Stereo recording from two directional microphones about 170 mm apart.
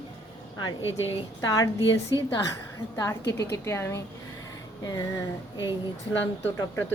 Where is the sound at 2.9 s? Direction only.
20° left (ahead or behind).